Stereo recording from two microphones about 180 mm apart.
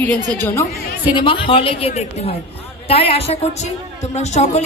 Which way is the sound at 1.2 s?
30° left (ahead or behind).